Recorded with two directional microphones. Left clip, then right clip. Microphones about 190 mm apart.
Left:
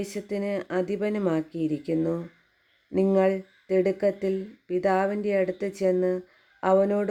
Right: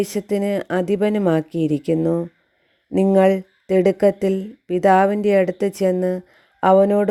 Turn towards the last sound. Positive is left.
turn(degrees=-40)  # may be behind; listen again after turning